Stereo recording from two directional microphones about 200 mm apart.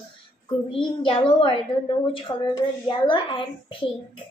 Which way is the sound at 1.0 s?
25° left (ahead or behind).